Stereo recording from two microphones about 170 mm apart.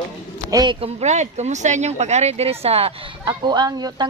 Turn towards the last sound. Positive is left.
turn(degrees=-25)  # may be behind; listen again after turning